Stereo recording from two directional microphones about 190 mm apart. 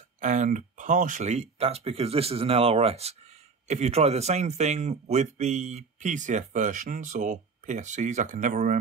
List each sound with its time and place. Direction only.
0.2 s speech: 40° right (ahead or behind)